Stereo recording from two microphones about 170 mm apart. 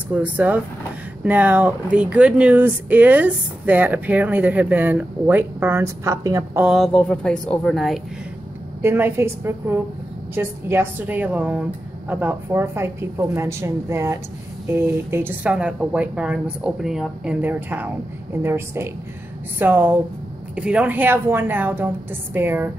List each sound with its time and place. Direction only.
0.1 s speech: 10° right (ahead or behind)
6.6 s a woman's voice: centre (ahead or behind)
8.8 s speech: 15° right (ahead or behind)